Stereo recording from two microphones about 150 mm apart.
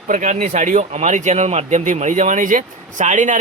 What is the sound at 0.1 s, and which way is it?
Speech, 55° right (ahead or behind).